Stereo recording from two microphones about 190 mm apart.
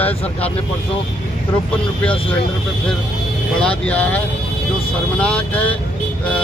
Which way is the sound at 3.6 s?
5° left (ahead or behind).